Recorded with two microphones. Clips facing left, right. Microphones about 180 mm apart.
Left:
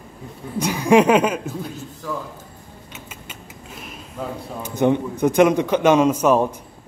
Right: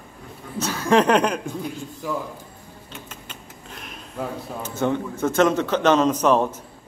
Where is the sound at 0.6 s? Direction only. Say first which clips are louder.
Left 4 dB; 15° left (ahead or behind).